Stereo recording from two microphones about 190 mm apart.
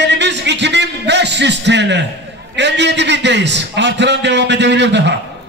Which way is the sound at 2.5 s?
65° right (ahead or behind).